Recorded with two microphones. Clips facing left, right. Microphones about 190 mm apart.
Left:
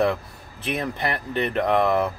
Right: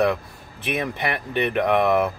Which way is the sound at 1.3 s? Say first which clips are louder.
Right 1 dB; 20° right (ahead or behind).